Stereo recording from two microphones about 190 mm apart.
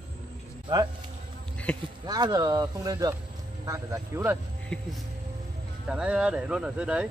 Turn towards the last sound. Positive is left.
turn(degrees=-5)  # may be behind; listen again after turning